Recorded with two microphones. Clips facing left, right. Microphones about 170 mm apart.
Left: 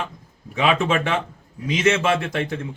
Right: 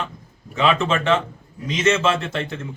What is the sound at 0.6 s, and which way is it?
A man's voice, 10° left (ahead or behind).